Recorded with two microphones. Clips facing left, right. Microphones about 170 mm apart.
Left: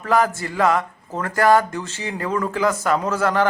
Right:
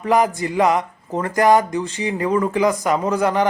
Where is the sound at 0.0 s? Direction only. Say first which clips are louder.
Right 2 dB; 15° right (ahead or behind).